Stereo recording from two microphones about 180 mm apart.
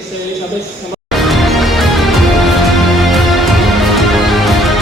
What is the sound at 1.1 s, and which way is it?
Music, centre (ahead or behind).